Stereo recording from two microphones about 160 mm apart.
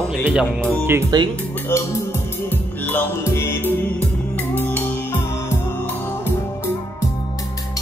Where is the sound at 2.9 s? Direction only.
15° left (ahead or behind).